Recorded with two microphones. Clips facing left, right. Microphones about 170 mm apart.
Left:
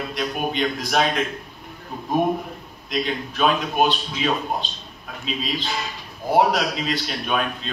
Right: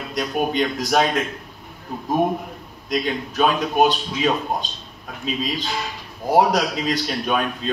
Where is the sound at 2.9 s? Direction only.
45° right (ahead or behind).